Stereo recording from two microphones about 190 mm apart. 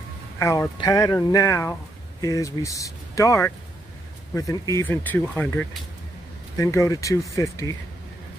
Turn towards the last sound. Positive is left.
turn(degrees=15)  # may be behind; listen again after turning